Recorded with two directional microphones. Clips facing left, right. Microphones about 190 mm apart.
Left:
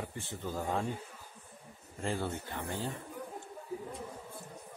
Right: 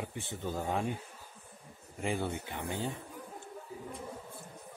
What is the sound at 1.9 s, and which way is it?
Speech, 15° right (ahead or behind).